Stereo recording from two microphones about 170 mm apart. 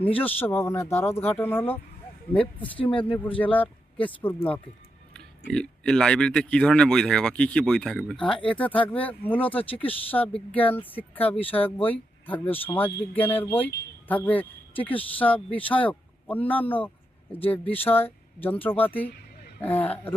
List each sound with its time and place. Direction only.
0.2 s speech: 10° left (ahead or behind)
2.6 s speech: 30° left (ahead or behind)
3.2 s speech: 10° left (ahead or behind)
5.5 s speech: 5° left (ahead or behind)